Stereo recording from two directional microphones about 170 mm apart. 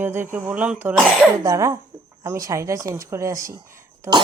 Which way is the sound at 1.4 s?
20° right (ahead or behind).